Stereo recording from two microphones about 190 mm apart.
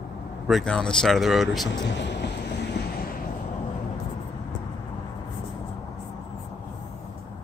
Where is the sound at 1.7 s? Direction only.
70° left (ahead or behind).